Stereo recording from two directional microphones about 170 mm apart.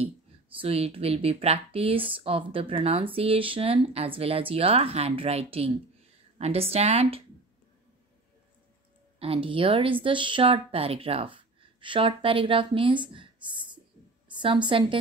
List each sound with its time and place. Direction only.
0.6 s speech: 35° right (ahead or behind)
9.2 s a woman's voice: 35° right (ahead or behind)